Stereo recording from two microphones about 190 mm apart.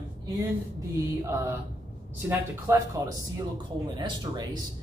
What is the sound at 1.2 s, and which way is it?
A man's voice, 15° right (ahead or behind).